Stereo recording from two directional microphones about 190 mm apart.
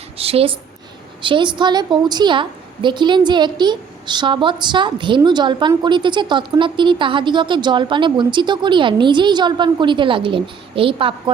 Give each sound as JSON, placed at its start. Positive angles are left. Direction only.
{"t": 0.2, "sound": "a woman's voice", "side_deg": -30}